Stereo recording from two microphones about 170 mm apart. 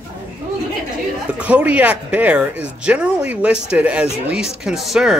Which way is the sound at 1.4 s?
5° right (ahead or behind).